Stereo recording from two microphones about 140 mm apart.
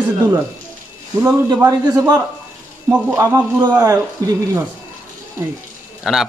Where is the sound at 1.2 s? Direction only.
20° right (ahead or behind).